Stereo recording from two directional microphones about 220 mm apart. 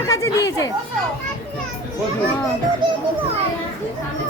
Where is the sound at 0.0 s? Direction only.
15° left (ahead or behind).